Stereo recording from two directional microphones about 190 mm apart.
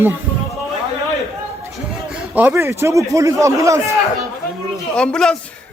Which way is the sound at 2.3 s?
15° right (ahead or behind).